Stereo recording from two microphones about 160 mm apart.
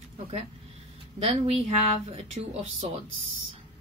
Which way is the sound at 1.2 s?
40° right (ahead or behind).